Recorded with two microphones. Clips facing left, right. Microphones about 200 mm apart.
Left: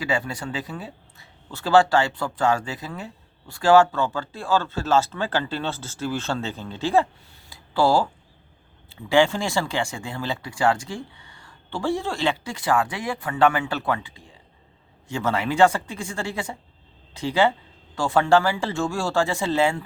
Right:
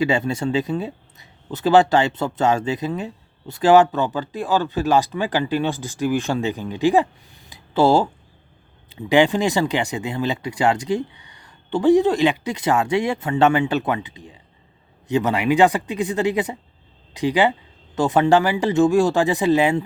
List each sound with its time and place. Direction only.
0.0 s speech: 25° right (ahead or behind)